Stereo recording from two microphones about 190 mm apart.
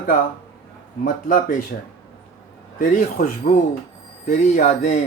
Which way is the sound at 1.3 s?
45° left (ahead or behind).